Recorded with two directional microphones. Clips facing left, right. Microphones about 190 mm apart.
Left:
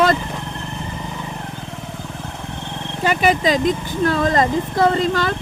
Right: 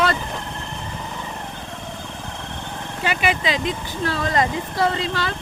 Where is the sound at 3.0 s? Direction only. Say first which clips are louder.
Left 6 dB; 40° left (ahead or behind).